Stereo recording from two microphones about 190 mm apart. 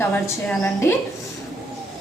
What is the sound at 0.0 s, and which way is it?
Speech, 10° left (ahead or behind).